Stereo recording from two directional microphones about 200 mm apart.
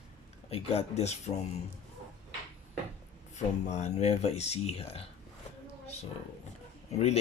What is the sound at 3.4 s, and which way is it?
Speech, 35° left (ahead or behind).